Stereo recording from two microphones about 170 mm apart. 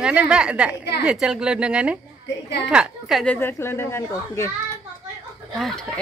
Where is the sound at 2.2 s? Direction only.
90° left.